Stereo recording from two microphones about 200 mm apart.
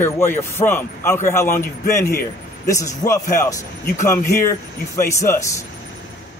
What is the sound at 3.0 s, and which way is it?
A man's voice, 20° left (ahead or behind).